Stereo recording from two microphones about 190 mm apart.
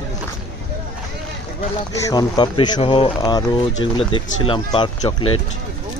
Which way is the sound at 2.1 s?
20° left (ahead or behind).